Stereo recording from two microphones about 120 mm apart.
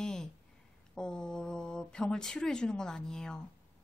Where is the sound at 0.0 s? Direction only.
5° left (ahead or behind).